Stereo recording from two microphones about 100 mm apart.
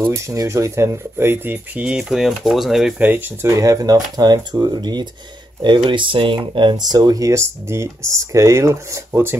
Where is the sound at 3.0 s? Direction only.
20° right (ahead or behind).